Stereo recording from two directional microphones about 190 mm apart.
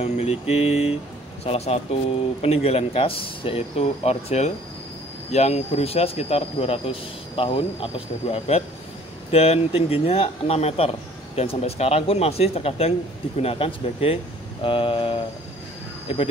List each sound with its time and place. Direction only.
0.0 s speech: 30° left (ahead or behind)